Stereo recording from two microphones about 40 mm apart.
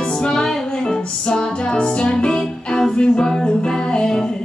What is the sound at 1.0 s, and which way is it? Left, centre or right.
Music, centre.